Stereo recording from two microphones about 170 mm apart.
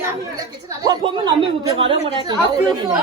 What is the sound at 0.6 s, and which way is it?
A woman's voice, 20° right (ahead or behind).